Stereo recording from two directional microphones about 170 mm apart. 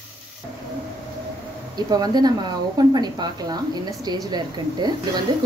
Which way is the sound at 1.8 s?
25° right (ahead or behind).